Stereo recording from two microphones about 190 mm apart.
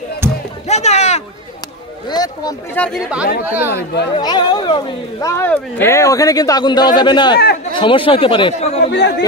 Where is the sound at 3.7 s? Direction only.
60° left (ahead or behind).